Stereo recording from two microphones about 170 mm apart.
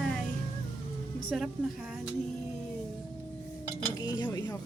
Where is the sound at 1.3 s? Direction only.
Centre (ahead or behind).